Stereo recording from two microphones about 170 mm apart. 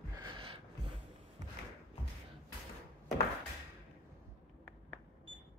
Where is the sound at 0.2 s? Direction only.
30° right (ahead or behind).